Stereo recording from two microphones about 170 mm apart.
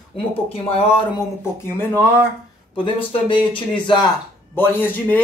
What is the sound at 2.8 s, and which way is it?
Speech, 30° left (ahead or behind).